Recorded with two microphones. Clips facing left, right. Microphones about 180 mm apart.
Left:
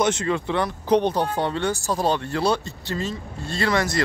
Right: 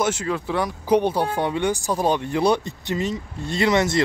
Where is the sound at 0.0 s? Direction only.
5° right (ahead or behind).